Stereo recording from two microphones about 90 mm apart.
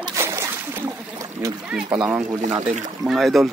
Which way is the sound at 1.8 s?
45° right (ahead or behind).